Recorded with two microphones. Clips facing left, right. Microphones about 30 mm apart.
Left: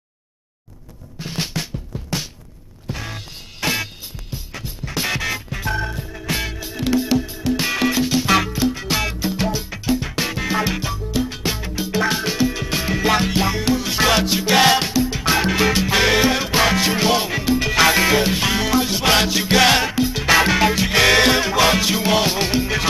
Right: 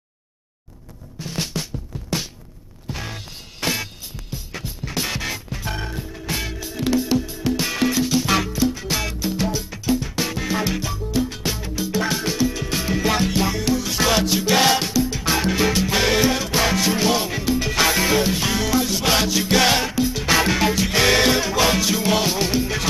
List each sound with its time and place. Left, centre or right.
1.2 s drum: centre
2.9 s music: centre